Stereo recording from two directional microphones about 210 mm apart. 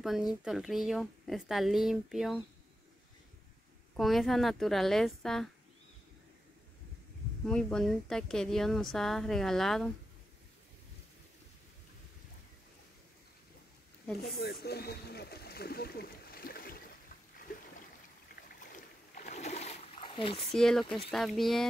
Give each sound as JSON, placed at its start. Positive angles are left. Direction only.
{"t": 0.0, "sound": "speech", "side_deg": 0}
{"t": 3.9, "sound": "speech", "side_deg": 0}
{"t": 7.4, "sound": "speech", "side_deg": 5}
{"t": 14.2, "sound": "a sound", "side_deg": 50}
{"t": 18.3, "sound": "a sound", "side_deg": 40}
{"t": 20.5, "sound": "speech", "side_deg": 0}